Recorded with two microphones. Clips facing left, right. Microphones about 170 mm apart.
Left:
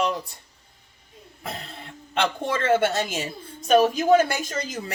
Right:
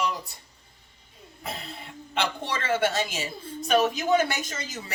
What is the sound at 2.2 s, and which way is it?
A woman's voice, 50° left (ahead or behind).